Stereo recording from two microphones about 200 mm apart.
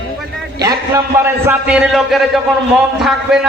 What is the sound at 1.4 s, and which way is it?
A man's voice, 5° right (ahead or behind).